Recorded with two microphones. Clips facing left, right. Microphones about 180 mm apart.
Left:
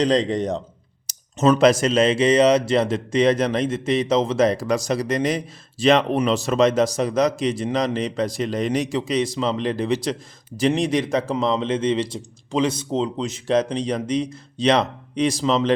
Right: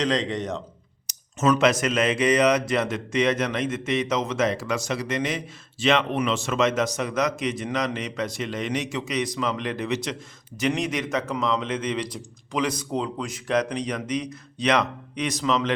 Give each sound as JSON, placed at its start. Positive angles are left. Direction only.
{"t": 0.0, "sound": "a man's voice", "side_deg": 35}